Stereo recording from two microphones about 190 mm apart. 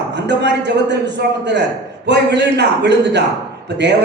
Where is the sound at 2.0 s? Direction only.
65° right (ahead or behind).